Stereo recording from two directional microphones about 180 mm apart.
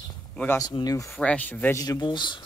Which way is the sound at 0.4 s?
15° left (ahead or behind).